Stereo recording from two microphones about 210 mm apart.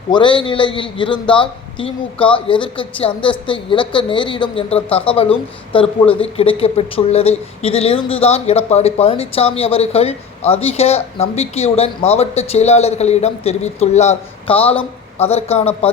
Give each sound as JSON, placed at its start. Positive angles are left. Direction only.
{"t": 0.1, "sound": "a man's voice", "side_deg": 25}